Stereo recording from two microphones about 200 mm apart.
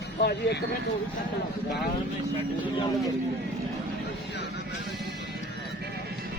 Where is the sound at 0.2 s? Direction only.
55° left (ahead or behind).